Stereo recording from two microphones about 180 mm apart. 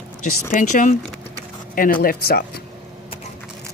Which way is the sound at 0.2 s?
45° left (ahead or behind).